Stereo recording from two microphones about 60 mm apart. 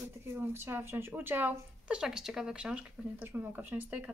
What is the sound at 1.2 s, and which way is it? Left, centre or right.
Speech, right.